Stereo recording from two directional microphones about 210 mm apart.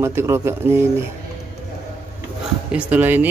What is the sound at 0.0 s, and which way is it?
Speech, 10° right (ahead or behind).